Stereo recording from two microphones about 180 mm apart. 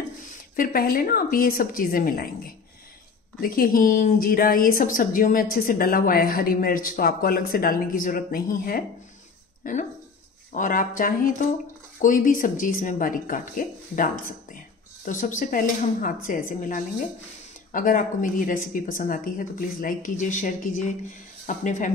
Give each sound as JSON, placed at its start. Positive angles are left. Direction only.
{"t": 0.6, "sound": "a woman's voice", "side_deg": 50}
{"t": 9.6, "sound": "a sound", "side_deg": 45}
{"t": 10.5, "sound": "a woman's voice", "side_deg": 45}